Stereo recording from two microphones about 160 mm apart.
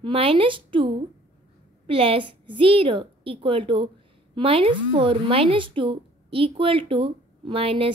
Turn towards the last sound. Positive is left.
turn(degrees=-35)  # may be behind; listen again after turning